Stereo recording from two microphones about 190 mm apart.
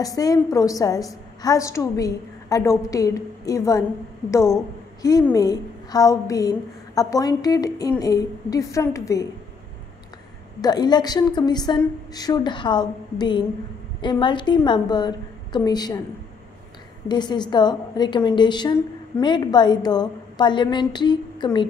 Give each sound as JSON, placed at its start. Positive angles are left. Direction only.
{"t": 0.0, "sound": "a woman's voice", "side_deg": 20}
{"t": 10.6, "sound": "a woman's voice", "side_deg": 20}
{"t": 17.1, "sound": "a woman's voice", "side_deg": 20}